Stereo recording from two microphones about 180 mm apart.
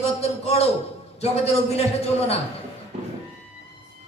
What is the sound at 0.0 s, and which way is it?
A man's voice, 35° left (ahead or behind).